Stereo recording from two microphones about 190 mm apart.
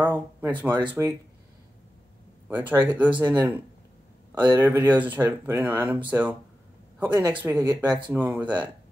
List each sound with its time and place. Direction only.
0.0 s a sound: 10° right (ahead or behind)
0.7 s speech: 25° right (ahead or behind)
2.4 s speech: 10° right (ahead or behind)
8.1 s speech: 10° right (ahead or behind)